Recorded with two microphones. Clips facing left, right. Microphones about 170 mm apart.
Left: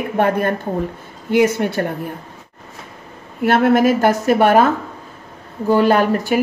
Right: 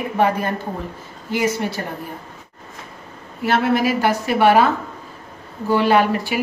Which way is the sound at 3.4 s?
55° left (ahead or behind).